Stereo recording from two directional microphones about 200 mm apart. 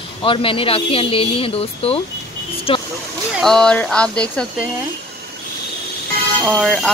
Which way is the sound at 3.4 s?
5° left (ahead or behind).